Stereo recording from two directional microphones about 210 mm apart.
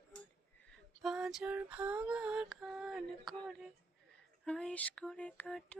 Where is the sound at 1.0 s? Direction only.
Centre (ahead or behind).